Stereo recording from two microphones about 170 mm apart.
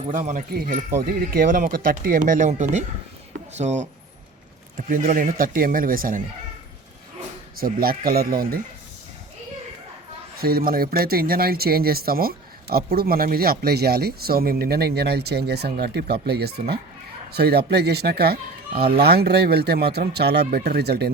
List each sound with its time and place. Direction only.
0.1 s speech: 50° right (ahead or behind)
4.9 s speech: 55° right (ahead or behind)
7.6 s speech: 60° right (ahead or behind)
10.4 s speech: 60° right (ahead or behind)